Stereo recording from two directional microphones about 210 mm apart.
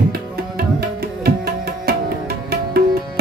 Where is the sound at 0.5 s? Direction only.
50° right (ahead or behind).